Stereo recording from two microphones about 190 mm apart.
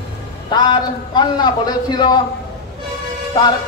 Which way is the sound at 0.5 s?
25° left (ahead or behind).